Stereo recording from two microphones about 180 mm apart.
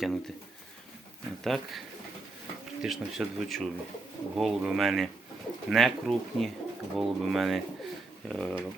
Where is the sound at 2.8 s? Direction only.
Centre (ahead or behind).